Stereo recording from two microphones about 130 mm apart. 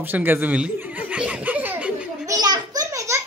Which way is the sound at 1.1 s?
10° right (ahead or behind).